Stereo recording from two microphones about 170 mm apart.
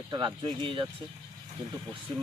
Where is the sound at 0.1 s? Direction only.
25° right (ahead or behind).